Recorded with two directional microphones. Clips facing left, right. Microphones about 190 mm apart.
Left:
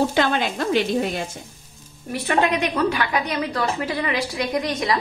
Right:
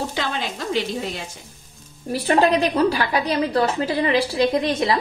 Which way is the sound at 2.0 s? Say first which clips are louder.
Right 3 dB; 30° right (ahead or behind).